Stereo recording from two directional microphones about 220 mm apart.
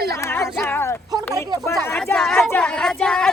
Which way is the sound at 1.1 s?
20° right (ahead or behind).